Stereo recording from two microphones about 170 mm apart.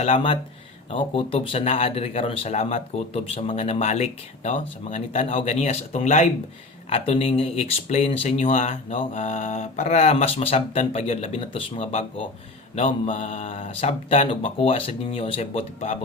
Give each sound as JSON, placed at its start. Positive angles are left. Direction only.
{"t": 0.9, "sound": "a man's voice", "side_deg": 35}